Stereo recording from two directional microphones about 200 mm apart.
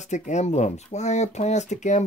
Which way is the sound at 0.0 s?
35° left (ahead or behind).